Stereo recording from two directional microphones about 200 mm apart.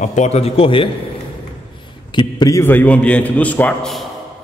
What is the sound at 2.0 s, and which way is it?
A man's voice, 20° left (ahead or behind).